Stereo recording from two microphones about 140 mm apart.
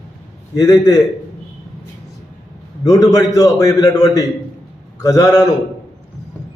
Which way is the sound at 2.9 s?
25° left (ahead or behind).